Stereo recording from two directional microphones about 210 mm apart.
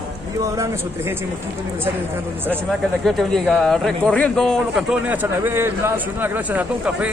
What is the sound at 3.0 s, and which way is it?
Speech, centre (ahead or behind).